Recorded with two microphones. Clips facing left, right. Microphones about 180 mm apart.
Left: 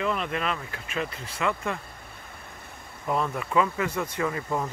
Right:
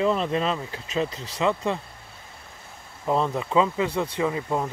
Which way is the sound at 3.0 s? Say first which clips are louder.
Right 4 dB; 25° right (ahead or behind).